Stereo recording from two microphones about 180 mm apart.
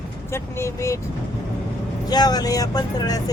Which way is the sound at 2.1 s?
20° left (ahead or behind).